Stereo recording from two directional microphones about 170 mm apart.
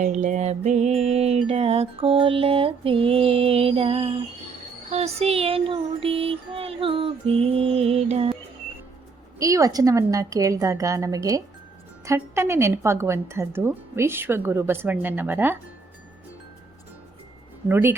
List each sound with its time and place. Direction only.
0.0 s music: 45° right (ahead or behind)
9.4 s a woman's voice: 20° right (ahead or behind)
17.7 s a woman's voice: 15° right (ahead or behind)